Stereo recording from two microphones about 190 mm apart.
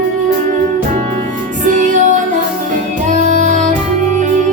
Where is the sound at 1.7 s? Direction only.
40° right (ahead or behind).